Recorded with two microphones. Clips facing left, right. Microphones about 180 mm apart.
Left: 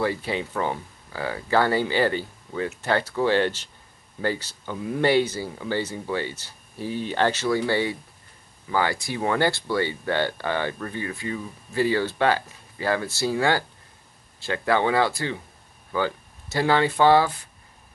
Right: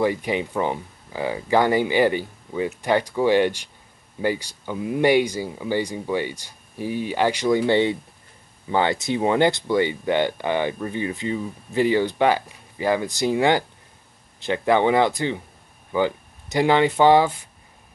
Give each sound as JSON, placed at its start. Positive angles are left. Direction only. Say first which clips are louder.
{"t": 0.0, "sound": "speech", "louder": "right 4 dB", "side_deg": -15}